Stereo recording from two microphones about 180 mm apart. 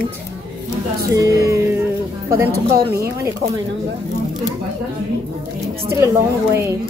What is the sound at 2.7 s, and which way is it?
Speech, 60° right (ahead or behind).